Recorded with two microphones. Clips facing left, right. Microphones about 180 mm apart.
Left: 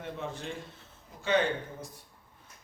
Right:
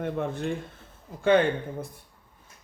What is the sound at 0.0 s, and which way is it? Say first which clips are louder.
Speech: right 9 dB; 55° right (ahead or behind).